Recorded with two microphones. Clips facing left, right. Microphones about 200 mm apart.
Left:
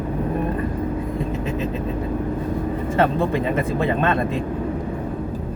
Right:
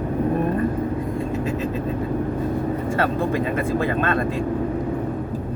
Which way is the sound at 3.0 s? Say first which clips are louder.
Left 4 dB; 20° left (ahead or behind).